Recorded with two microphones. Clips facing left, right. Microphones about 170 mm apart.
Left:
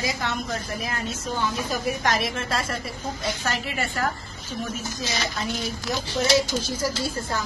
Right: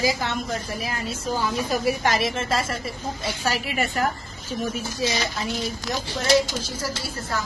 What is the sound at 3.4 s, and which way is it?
Speech, 15° right (ahead or behind).